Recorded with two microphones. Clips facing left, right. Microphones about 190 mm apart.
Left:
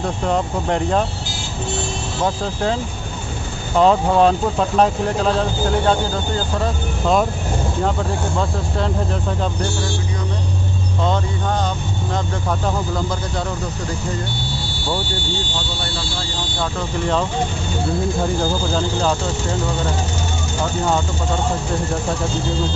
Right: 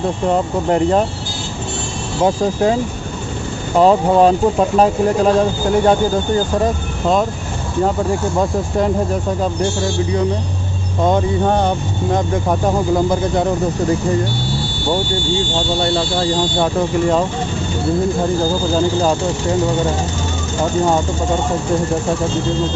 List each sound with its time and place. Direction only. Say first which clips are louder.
0.3 s speech: right 4 dB; 5° right (ahead or behind)
2.2 s speech: right 6 dB; 10° right (ahead or behind)
8.4 s speech: right 6 dB; 15° right (ahead or behind)
12.1 s speech: right 7 dB; 20° right (ahead or behind)